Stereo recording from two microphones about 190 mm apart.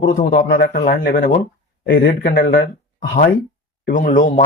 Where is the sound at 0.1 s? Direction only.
50° left (ahead or behind).